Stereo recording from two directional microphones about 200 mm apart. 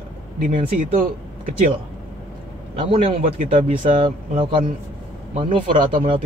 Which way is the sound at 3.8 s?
25° right (ahead or behind).